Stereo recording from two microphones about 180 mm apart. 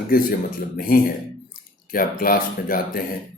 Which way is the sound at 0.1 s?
50° left (ahead or behind).